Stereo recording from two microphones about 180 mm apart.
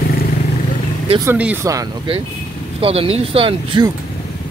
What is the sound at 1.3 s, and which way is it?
Speech, 10° right (ahead or behind).